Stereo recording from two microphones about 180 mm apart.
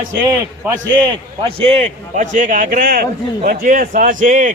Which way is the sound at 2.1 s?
45° right (ahead or behind).